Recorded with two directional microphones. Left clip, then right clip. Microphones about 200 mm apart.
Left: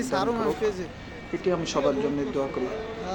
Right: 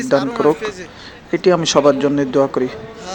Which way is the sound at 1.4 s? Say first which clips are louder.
Right 13 dB; 45° right (ahead or behind).